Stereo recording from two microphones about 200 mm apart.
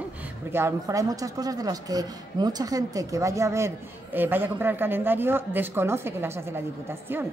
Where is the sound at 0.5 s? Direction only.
10° right (ahead or behind).